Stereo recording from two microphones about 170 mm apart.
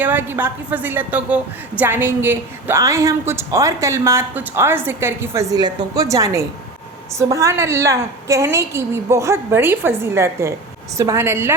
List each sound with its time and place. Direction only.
0.0 s a woman's voice: 10° right (ahead or behind)